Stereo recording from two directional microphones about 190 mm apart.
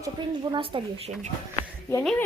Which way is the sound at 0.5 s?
25° right (ahead or behind).